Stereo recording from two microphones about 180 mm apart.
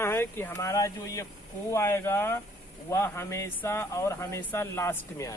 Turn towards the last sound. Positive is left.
turn(degrees=15)  # may be behind; listen again after turning